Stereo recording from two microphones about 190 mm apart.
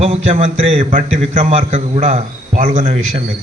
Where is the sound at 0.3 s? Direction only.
30° right (ahead or behind).